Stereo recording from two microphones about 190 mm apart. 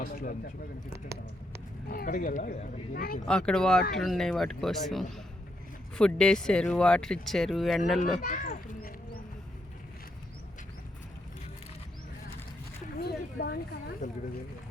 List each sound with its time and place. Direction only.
0.0 s speech: 50° left (ahead or behind)
1.0 s speech: 15° right (ahead or behind)
1.9 s speech: 50° left (ahead or behind)
3.2 s speech: 5° left (ahead or behind)
8.2 s a sound: 45° left (ahead or behind)
13.0 s a sound: 55° left (ahead or behind)